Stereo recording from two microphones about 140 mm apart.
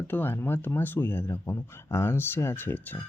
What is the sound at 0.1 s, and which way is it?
Speech, 15° left (ahead or behind).